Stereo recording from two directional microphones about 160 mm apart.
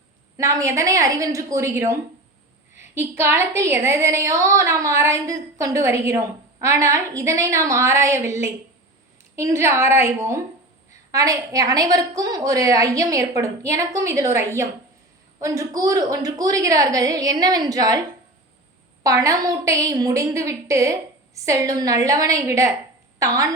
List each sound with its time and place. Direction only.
0.3 s a woman's voice: 20° right (ahead or behind)
19.0 s a woman's voice: 20° right (ahead or behind)